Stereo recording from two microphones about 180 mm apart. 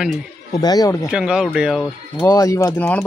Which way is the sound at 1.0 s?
5° right (ahead or behind).